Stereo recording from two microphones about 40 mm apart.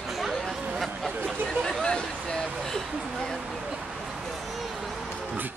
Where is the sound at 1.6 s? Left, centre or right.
Centre.